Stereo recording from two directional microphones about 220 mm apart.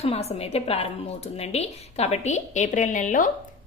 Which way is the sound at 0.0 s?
30° left (ahead or behind).